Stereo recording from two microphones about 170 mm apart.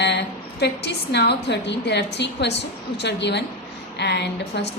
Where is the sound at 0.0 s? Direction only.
85° left.